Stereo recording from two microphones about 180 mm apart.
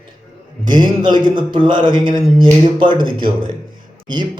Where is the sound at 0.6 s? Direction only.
25° right (ahead or behind).